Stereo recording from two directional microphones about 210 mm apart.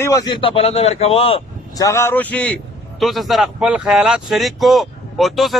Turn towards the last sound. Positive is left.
turn(degrees=0)  # may be behind; listen again after turning